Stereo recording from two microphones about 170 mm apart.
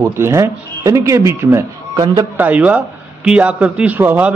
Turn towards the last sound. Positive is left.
turn(degrees=-10)  # may be behind; listen again after turning